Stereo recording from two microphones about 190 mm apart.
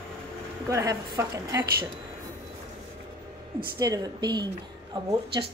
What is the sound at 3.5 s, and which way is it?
A woman's voice, 20° right (ahead or behind).